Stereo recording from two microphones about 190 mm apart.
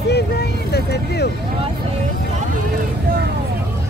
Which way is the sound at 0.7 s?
60° left (ahead or behind).